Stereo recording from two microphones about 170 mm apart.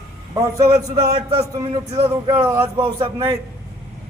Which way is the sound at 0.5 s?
25° right (ahead or behind).